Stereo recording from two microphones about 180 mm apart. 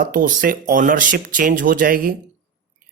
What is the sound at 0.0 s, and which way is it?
Speech, 50° right (ahead or behind).